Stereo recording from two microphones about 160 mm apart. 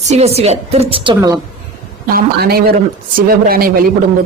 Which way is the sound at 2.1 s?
75° right (ahead or behind).